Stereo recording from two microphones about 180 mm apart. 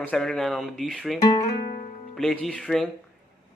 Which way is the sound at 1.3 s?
40° left (ahead or behind).